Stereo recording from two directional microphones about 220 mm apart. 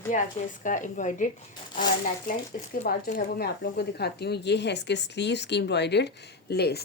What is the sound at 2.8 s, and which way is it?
A woman's voice, 40° left (ahead or behind).